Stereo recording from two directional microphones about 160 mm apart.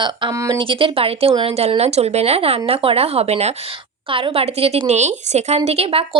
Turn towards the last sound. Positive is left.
turn(degrees=-35)  # may be behind; listen again after turning